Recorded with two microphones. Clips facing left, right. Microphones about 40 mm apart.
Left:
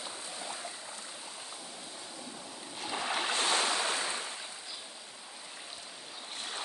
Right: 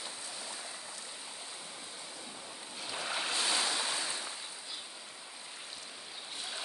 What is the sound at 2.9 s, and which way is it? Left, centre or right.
Ocean, left.